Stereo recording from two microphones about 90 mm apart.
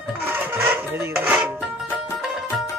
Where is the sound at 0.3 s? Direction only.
25° right (ahead or behind).